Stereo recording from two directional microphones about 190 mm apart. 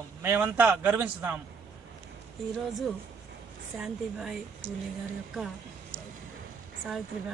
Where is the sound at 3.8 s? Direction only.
Centre (ahead or behind).